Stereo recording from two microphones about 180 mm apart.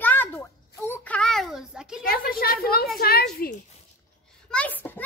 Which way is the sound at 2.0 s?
55° left (ahead or behind).